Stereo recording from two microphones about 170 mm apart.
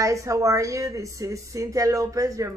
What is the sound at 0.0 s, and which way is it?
A woman's voice, 20° right (ahead or behind).